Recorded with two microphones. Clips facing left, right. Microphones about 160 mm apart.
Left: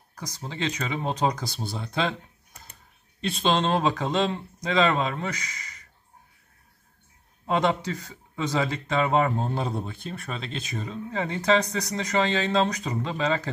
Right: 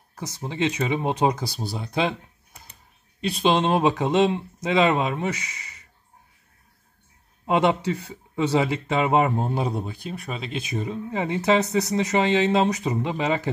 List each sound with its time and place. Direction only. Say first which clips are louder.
0.1 s a sound: right 4 dB; 25° right (ahead or behind)
0.4 s speech: right 6 dB; 20° right (ahead or behind)
1.6 s speech: right 2 dB; centre (ahead or behind)
3.2 s speech: right 3 dB; 10° right (ahead or behind)
7.4 s speech: right 3 dB; 15° right (ahead or behind)
10.7 s speech: right 5 dB; 15° right (ahead or behind)